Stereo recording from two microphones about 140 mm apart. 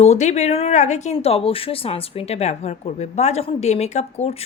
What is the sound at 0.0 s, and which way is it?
A woman's voice, 55° left (ahead or behind).